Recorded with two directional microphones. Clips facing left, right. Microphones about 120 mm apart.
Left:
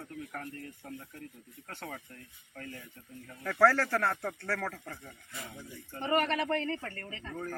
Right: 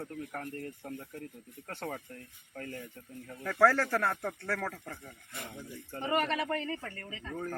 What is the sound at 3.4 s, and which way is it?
Speech, 10° right (ahead or behind).